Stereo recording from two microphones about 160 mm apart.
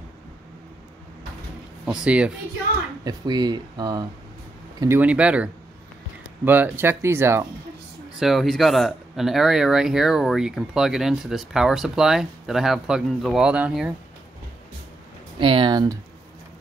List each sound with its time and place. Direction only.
1.9 s speech: 5° right (ahead or behind)
3.0 s speech: 25° right (ahead or behind)
4.7 s speech: 15° right (ahead or behind)
8.2 s speech: centre (ahead or behind)
15.3 s speech: 30° right (ahead or behind)